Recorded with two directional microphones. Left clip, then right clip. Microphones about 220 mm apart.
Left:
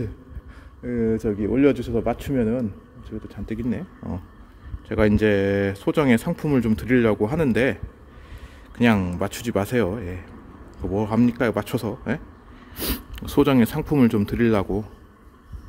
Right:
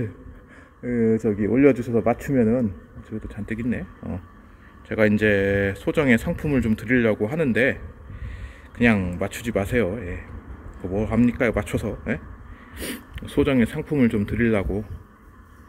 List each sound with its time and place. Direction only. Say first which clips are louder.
0.8 s speech: right 2 dB; 15° right (ahead or behind)
2.0 s speech: right 4 dB; 5° right (ahead or behind); by 14.9 s 10° left (ahead or behind)